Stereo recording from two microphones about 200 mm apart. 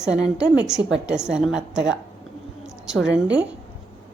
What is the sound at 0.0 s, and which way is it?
A woman's voice, 5° right (ahead or behind).